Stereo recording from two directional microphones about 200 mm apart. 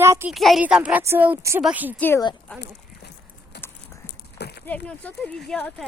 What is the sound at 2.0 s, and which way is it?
Speech, 15° left (ahead or behind).